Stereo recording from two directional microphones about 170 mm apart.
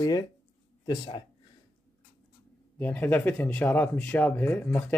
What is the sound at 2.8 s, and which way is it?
Speech, 10° left (ahead or behind).